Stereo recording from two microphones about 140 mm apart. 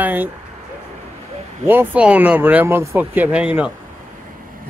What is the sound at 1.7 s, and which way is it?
Speech, 10° right (ahead or behind).